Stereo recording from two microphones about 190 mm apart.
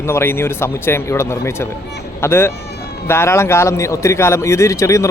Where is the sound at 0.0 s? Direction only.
15° left (ahead or behind).